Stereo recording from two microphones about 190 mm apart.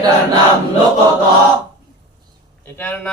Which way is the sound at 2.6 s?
10° left (ahead or behind).